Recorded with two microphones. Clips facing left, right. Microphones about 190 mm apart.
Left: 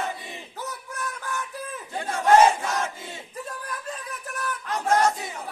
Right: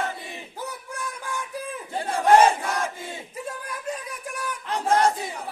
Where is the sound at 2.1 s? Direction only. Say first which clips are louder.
Even; 30° right (ahead or behind).